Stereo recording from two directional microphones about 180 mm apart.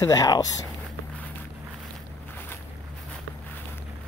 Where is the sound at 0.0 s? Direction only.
20° left (ahead or behind).